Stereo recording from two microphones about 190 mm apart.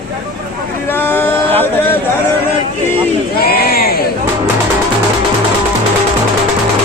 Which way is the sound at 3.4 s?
50° left (ahead or behind).